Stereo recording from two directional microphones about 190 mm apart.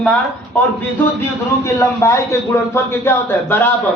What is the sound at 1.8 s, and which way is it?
A man's voice, 15° left (ahead or behind).